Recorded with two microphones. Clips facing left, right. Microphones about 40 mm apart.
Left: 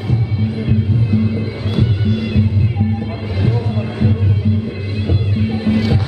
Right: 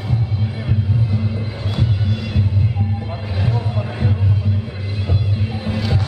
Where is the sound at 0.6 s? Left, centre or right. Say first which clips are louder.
Left 3 dB; centre.